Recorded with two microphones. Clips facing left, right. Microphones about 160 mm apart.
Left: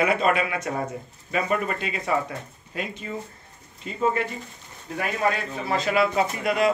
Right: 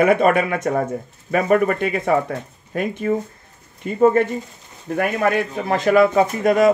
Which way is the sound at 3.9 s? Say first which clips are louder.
Right 10 dB; 50° right (ahead or behind).